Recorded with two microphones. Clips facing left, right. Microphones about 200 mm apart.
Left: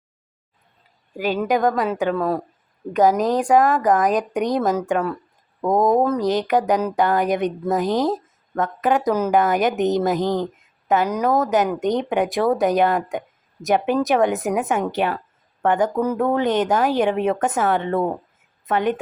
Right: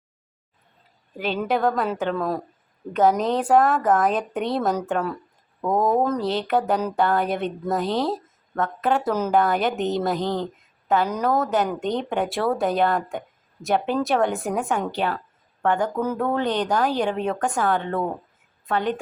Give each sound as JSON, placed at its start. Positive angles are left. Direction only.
{"t": 1.1, "sound": "speech", "side_deg": 10}
{"t": 1.7, "sound": "speech", "side_deg": 0}
{"t": 4.6, "sound": "speech", "side_deg": 0}